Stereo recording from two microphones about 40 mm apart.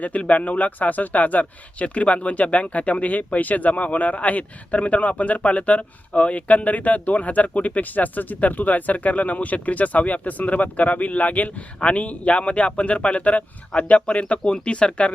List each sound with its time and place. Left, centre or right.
0.0 s speech: left